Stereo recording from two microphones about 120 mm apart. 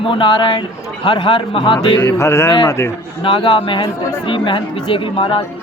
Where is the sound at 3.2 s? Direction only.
45° left (ahead or behind).